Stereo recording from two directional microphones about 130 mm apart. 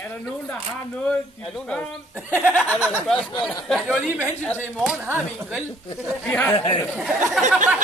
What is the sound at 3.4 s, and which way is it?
Speech, centre (ahead or behind).